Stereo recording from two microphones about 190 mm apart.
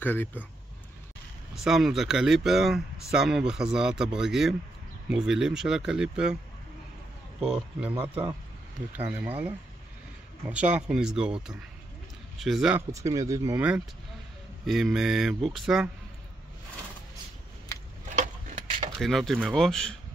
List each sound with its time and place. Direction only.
0.0 s speech: 10° left (ahead or behind)
1.5 s speech: centre (ahead or behind)
7.3 s speech: 5° right (ahead or behind)
12.4 s speech: centre (ahead or behind)
12.9 s speech: 15° right (ahead or behind); by 15.9 s centre (ahead or behind)
18.1 s a sound: 40° right (ahead or behind)
18.9 s speech: centre (ahead or behind)